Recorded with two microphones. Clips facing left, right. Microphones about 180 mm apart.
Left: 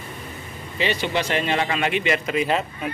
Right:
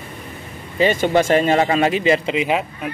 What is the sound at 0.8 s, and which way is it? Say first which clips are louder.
A man's voice: right 8 dB; 45° right (ahead or behind).